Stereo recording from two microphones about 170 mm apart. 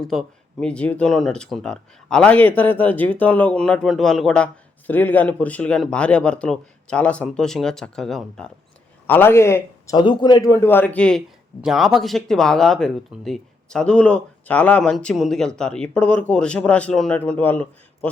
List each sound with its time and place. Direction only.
0.0 s speech: centre (ahead or behind)
9.0 s speech: 10° left (ahead or behind)